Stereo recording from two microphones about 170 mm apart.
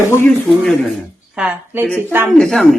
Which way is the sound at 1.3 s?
5° right (ahead or behind).